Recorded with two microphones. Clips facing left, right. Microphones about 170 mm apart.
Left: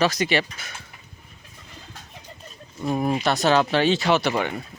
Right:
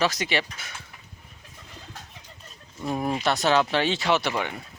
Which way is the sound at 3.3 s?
25° right (ahead or behind).